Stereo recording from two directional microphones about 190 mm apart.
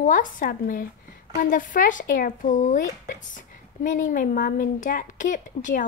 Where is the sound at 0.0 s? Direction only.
45° left (ahead or behind).